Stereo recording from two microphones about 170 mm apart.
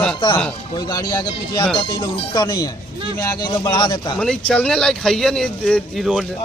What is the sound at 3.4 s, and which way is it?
Speech, 25° left (ahead or behind).